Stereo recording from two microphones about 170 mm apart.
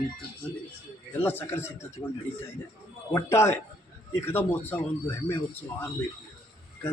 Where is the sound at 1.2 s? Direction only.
10° left (ahead or behind).